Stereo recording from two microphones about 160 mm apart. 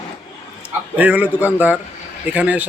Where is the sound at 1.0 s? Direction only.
10° right (ahead or behind).